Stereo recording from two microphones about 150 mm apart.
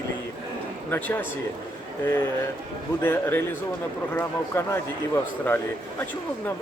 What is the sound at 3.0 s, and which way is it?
A man's voice, 15° left (ahead or behind).